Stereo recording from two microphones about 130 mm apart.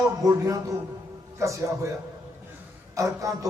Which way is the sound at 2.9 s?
25° right (ahead or behind).